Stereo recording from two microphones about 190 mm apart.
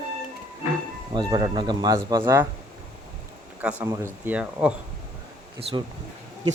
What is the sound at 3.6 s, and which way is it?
Speech, 10° right (ahead or behind).